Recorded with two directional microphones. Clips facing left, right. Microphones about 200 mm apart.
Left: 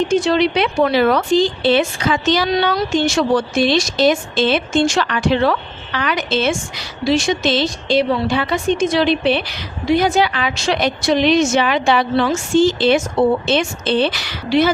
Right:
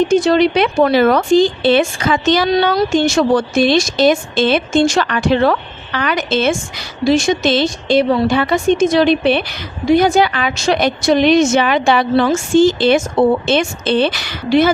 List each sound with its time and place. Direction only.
0.1 s a woman's voice: 45° right (ahead or behind)